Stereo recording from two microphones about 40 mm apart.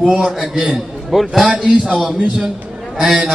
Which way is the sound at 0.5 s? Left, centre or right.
Centre.